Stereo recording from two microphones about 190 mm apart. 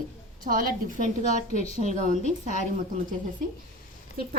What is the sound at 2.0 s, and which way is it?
Speech, 40° right (ahead or behind).